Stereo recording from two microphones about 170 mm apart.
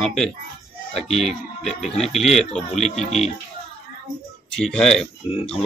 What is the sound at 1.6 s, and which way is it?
Speech, centre (ahead or behind).